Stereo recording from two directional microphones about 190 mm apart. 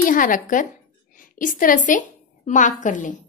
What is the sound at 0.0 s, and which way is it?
A woman's voice, 45° left (ahead or behind).